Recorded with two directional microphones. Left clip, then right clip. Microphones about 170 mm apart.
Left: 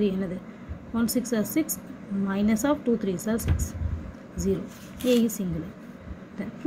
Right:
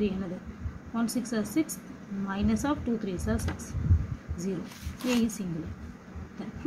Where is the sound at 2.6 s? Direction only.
30° left (ahead or behind).